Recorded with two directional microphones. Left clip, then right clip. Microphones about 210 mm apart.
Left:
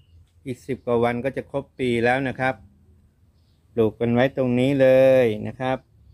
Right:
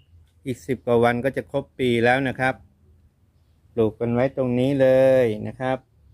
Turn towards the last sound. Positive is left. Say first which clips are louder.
# even
turn(degrees=0)  # may be behind; listen again after turning